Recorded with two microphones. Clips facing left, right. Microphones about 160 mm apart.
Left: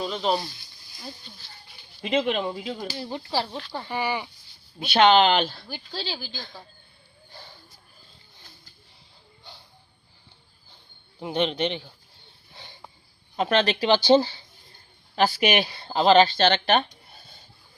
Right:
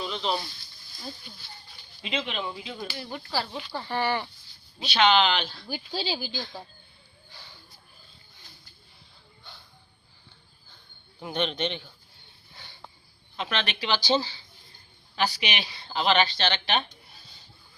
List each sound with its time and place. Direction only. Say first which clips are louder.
0.0 s a sound: left 4 dB; 40° left (ahead or behind)
2.0 s speech: left 8 dB; 45° left (ahead or behind); by 4.3 s 10° left (ahead or behind)
4.8 s a woman's voice: left 4 dB; 50° left (ahead or behind)
5.6 s speech: right 3 dB; 10° right (ahead or behind)
7.3 s a sound: left 5 dB; 45° left (ahead or behind)
11.2 s a man's voice: left 4 dB; 30° left (ahead or behind)
11.6 s speech: left 4 dB; 15° left (ahead or behind)
13.3 s a woman's voice: left 9 dB; 45° left (ahead or behind)
17.2 s rub: left 4 dB; 50° left (ahead or behind)